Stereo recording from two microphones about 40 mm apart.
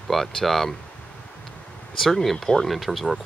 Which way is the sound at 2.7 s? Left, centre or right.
Centre.